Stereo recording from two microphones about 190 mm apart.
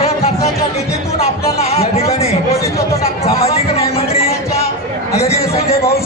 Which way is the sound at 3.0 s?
35° left (ahead or behind).